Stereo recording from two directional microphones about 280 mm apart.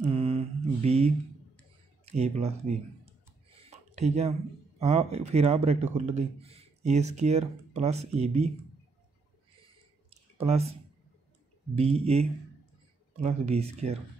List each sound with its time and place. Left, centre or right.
0.1 s mantra: centre
2.0 s speech: right
10.4 s speech: right